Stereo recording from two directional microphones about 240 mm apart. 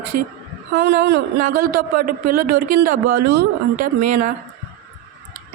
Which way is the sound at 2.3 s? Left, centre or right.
Right.